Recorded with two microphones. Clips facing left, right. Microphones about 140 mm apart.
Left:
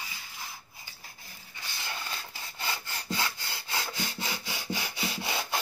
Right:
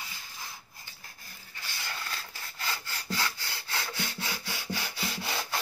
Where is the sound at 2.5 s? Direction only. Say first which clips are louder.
Left 1 dB; 20° left (ahead or behind).